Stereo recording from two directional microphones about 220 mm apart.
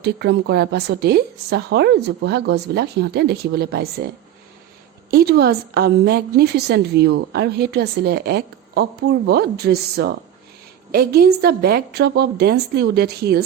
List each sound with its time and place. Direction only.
0.0 s a woman's voice: 50° right (ahead or behind)
5.1 s a woman's voice: 45° right (ahead or behind)